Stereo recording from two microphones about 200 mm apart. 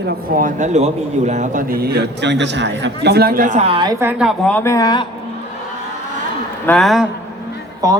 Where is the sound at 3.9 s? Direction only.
10° right (ahead or behind).